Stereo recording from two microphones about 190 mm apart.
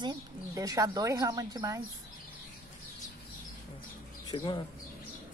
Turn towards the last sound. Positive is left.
turn(degrees=25)  # may be behind; listen again after turning